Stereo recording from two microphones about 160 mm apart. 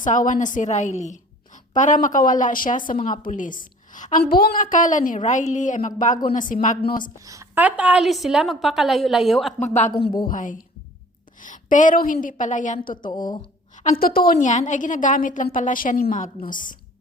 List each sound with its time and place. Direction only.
0.0 s a woman's voice: 55° left (ahead or behind)
4.2 s a woman's voice: 75° left (ahead or behind); by 7.1 s 60° left (ahead or behind)
7.2 s speech: 20° right (ahead or behind)
7.6 s a woman's voice: 10° right (ahead or behind)
9.6 s a woman's voice: 45° left (ahead or behind)
13.0 s speech: 25° left (ahead or behind)
13.7 s a woman's voice: 60° left (ahead or behind)